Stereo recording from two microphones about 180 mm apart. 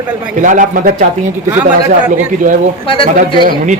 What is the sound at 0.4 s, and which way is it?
Speech, 45° right (ahead or behind).